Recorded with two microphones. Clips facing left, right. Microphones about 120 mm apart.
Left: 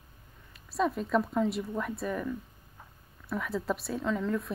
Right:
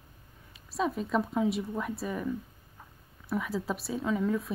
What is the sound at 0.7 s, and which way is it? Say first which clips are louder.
Speech: left 1 dB; centre (ahead or behind).